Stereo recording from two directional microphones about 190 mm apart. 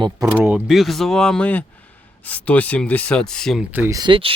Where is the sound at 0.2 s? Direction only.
10° right (ahead or behind).